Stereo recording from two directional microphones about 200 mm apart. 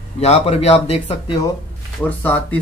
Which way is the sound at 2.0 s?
10° left (ahead or behind).